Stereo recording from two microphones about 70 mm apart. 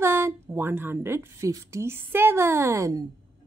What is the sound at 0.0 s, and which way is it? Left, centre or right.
A woman's voice, right.